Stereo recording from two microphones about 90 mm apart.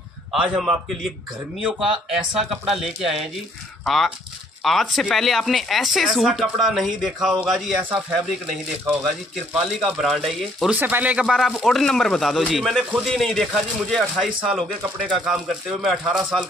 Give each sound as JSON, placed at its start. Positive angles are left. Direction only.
{"t": 0.3, "sound": "speech", "side_deg": -5}
{"t": 10.7, "sound": "speech", "side_deg": -20}
{"t": 11.2, "sound": "speech", "side_deg": 0}